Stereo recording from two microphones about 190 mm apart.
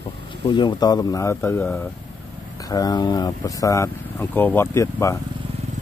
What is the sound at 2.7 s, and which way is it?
Speech, 20° left (ahead or behind).